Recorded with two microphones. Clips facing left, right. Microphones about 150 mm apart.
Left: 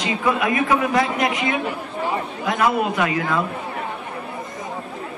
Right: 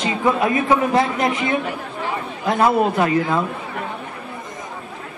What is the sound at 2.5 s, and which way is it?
Speech, 30° right (ahead or behind).